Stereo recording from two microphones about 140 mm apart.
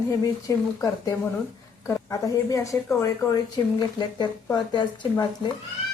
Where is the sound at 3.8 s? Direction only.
30° left (ahead or behind).